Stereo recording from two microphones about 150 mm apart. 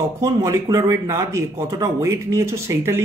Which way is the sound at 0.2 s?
20° right (ahead or behind).